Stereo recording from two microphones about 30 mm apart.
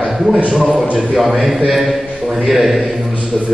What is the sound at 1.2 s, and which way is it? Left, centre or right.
A man's voice, centre.